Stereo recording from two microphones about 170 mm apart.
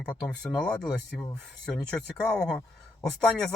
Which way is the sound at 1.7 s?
5° left (ahead or behind).